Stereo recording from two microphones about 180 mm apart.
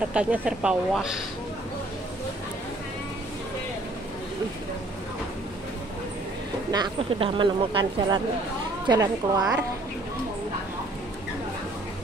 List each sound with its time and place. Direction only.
0.0 s speech: 5° right (ahead or behind)
6.7 s speech: 25° right (ahead or behind)